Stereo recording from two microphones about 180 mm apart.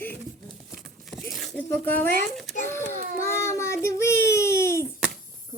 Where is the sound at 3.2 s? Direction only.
15° left (ahead or behind).